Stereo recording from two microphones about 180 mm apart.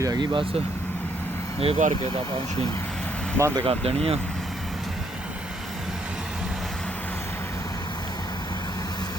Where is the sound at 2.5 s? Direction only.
20° left (ahead or behind).